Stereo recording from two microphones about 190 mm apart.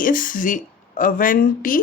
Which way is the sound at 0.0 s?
45° left (ahead or behind).